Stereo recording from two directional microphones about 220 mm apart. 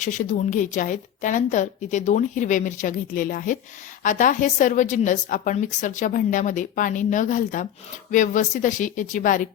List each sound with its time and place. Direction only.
0.0 s a woman's voice: 35° left (ahead or behind)